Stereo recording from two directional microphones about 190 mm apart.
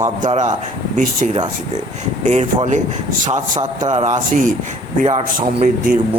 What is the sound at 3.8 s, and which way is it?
Speech, 40° right (ahead or behind).